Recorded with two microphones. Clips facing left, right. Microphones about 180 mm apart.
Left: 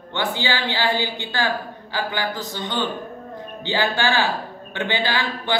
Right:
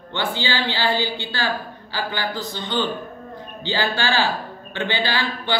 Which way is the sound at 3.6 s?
20° left (ahead or behind).